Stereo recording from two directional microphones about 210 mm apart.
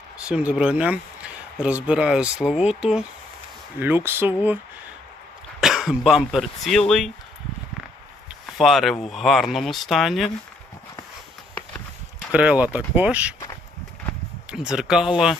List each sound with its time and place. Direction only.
0.3 s speech: 5° right (ahead or behind)
5.5 s speech: centre (ahead or behind)
8.5 s speech: centre (ahead or behind)
12.3 s speech: 5° right (ahead or behind)
14.5 s speech: centre (ahead or behind)